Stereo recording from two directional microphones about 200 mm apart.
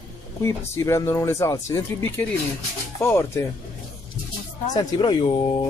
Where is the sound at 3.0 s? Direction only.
15° left (ahead or behind).